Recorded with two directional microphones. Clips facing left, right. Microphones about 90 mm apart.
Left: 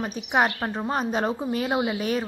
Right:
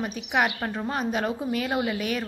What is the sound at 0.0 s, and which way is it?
A woman's voice, 30° left (ahead or behind).